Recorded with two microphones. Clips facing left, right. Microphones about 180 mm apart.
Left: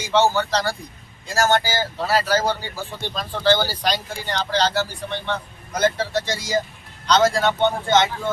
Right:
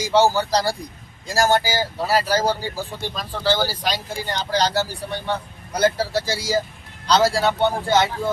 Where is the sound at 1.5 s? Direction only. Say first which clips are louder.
Right 1 dB; 10° right (ahead or behind).